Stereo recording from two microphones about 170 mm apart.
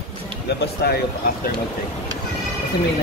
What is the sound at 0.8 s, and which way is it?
Speech, 75° left (ahead or behind).